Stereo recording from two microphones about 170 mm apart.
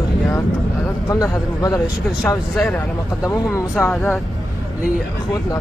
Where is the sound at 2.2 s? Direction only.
5° left (ahead or behind).